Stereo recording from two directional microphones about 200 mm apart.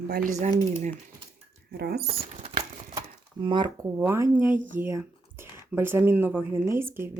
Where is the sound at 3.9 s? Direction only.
10° right (ahead or behind).